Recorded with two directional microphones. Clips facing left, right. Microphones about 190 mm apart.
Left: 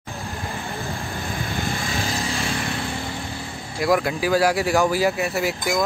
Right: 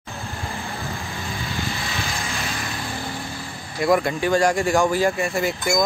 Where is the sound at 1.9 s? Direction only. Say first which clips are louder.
Left 3 dB; 35° left (ahead or behind).